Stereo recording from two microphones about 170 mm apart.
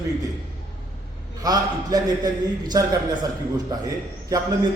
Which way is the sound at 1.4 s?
20° right (ahead or behind).